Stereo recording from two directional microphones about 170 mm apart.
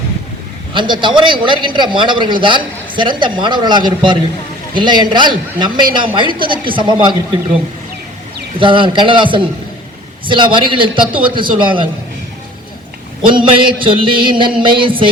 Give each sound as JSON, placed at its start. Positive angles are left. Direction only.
{"t": 0.7, "sound": "a man's voice", "side_deg": -30}
{"t": 8.5, "sound": "a man's voice", "side_deg": -30}
{"t": 13.2, "sound": "a man's voice", "side_deg": -30}